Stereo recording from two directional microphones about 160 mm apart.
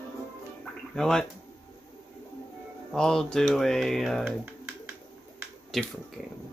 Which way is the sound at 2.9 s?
5° left (ahead or behind).